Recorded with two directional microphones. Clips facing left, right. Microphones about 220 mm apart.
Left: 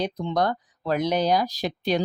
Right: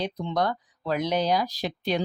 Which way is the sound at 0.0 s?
45° left (ahead or behind).